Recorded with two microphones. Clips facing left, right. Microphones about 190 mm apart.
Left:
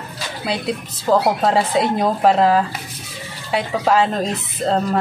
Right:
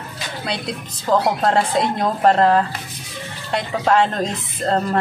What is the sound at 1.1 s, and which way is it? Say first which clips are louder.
A woman's voice: left 1 dB; 10° left (ahead or behind).